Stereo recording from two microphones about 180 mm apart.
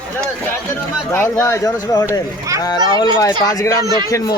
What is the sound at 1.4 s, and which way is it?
Speech, 15° left (ahead or behind).